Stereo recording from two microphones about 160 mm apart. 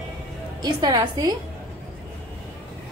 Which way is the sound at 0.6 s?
25° right (ahead or behind).